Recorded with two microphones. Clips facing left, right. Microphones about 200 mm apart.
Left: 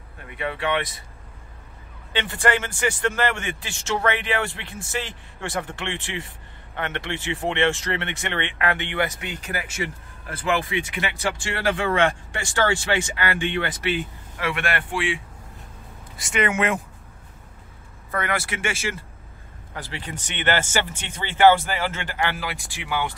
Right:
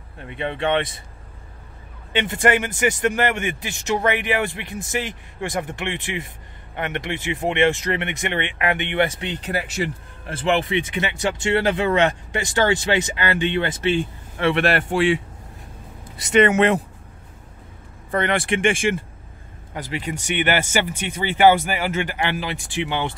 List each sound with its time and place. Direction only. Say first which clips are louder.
0.4 s speech: right 3 dB; 25° right (ahead or behind)
2.1 s a man's voice: right 4 dB; 20° right (ahead or behind); by 15.2 s 40° right (ahead or behind)
16.3 s speech: right 7 dB; 35° right (ahead or behind)
18.1 s speech: right 6 dB; 30° right (ahead or behind)
19.7 s a man's voice: right 6 dB; 15° right (ahead or behind)